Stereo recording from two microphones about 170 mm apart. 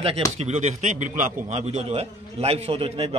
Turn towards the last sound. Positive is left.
turn(degrees=-35)  # may be behind; listen again after turning